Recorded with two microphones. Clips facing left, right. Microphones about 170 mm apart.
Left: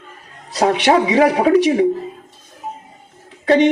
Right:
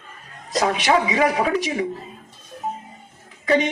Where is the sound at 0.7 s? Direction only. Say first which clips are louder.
Left 7 dB; 70° left (ahead or behind).